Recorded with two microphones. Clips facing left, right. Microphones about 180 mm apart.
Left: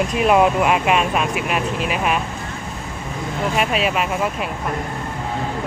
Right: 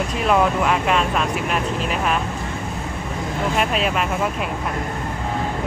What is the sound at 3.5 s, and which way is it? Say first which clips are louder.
Speech: left 2 dB; 5° left (ahead or behind).